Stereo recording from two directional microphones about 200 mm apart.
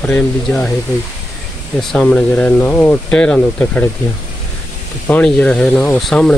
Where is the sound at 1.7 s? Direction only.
5° left (ahead or behind).